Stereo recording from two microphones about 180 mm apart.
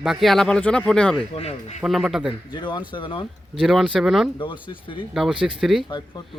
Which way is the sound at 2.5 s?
25° left (ahead or behind).